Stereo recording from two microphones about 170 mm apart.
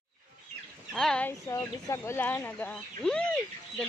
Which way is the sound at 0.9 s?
5° left (ahead or behind).